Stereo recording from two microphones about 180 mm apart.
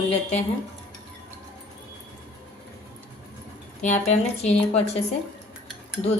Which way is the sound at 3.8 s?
40° left (ahead or behind).